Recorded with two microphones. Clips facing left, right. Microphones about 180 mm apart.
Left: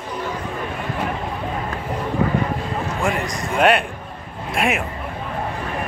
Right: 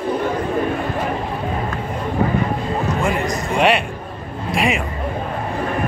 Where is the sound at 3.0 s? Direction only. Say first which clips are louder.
Right 3 dB; centre (ahead or behind).